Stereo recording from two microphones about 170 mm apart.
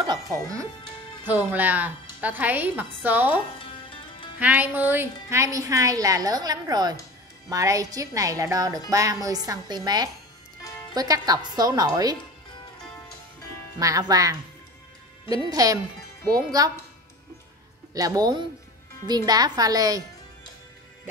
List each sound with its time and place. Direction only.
0.0 s speech: 20° right (ahead or behind)
1.2 s a woman's voice: 10° right (ahead or behind)
4.4 s a woman's voice: 10° right (ahead or behind)
13.7 s a woman's voice: 20° right (ahead or behind)
15.5 s a woman's voice: 20° right (ahead or behind)
17.9 s a woman's voice: 20° right (ahead or behind)